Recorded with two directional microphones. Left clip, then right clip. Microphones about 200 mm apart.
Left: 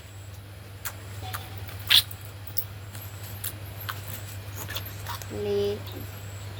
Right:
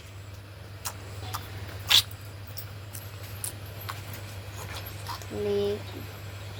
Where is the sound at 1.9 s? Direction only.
20° right (ahead or behind).